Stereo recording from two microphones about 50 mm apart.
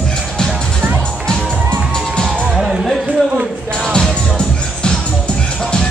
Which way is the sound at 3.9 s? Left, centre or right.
Centre.